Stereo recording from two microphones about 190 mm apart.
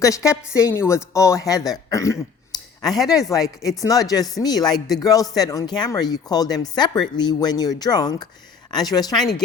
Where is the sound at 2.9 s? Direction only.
Centre (ahead or behind).